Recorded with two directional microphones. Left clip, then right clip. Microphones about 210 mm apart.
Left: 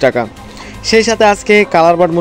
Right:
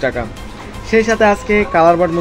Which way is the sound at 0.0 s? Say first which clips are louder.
Left 7 dB; 45° left (ahead or behind).